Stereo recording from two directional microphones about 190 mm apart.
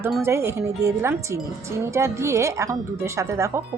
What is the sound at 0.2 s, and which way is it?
Speech, 15° right (ahead or behind).